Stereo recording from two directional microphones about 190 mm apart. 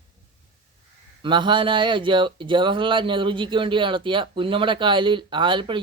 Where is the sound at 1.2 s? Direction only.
25° right (ahead or behind).